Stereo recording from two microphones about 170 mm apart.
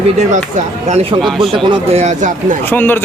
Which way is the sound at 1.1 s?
30° right (ahead or behind).